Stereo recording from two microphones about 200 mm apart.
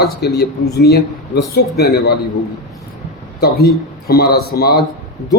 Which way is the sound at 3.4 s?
50° left (ahead or behind).